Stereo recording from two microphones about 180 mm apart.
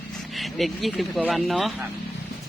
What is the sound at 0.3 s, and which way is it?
Speech, centre (ahead or behind).